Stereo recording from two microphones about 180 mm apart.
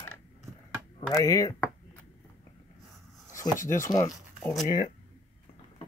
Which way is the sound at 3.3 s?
45° left (ahead or behind).